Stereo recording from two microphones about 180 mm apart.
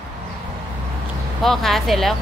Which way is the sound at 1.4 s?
Centre (ahead or behind).